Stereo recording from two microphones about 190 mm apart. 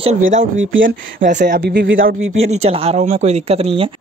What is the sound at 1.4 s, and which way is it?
Speech, 55° right (ahead or behind).